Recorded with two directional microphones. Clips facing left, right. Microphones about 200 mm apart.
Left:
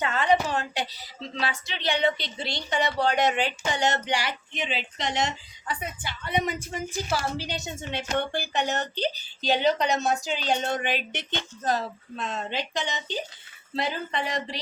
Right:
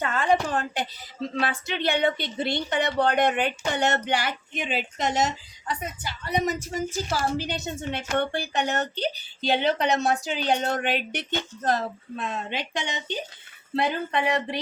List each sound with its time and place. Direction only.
0.0 s a sound: 50° right (ahead or behind)
0.4 s a woman's voice: 50° right (ahead or behind)
13.7 s a woman's voice: 60° right (ahead or behind)